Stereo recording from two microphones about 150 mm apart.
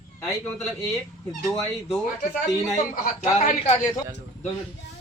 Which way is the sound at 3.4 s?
50° left (ahead or behind).